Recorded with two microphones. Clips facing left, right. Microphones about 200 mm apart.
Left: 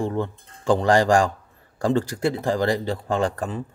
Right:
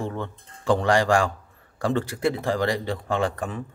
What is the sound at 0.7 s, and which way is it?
Speech, 35° left (ahead or behind).